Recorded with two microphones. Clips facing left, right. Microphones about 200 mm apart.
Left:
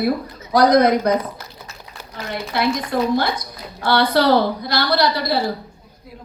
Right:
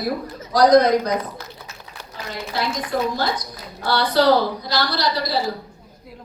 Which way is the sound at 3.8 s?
55° left (ahead or behind).